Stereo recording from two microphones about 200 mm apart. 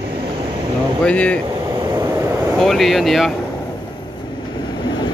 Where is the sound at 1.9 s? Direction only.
15° right (ahead or behind).